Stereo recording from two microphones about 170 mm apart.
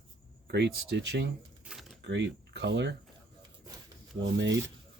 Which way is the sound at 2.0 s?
90° right.